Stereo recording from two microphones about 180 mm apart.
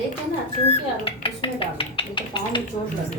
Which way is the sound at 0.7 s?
30° left (ahead or behind).